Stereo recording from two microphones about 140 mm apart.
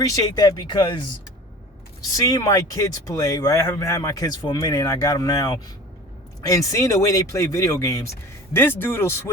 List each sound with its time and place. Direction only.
0.0 s speech: 25° left (ahead or behind)
2.1 s speech: 25° left (ahead or behind)